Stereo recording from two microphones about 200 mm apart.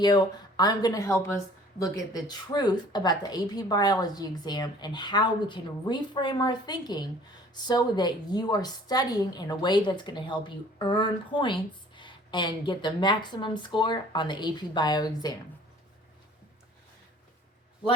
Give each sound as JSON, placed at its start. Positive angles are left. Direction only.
{"t": 0.0, "sound": "a woman's voice", "side_deg": 20}